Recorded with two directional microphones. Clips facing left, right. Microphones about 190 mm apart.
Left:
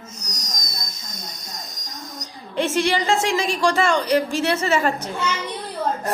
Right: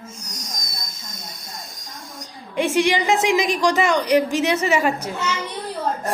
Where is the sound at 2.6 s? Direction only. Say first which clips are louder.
Right 2 dB; 15° right (ahead or behind).